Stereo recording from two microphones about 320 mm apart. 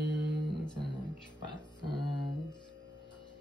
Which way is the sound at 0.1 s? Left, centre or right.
Right.